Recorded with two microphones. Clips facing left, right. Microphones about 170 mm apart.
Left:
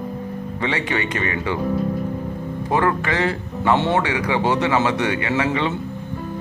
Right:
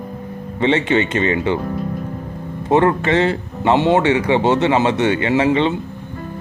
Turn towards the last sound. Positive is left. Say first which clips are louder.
# right 6 dB
turn(degrees=-25)  # may be behind; listen again after turning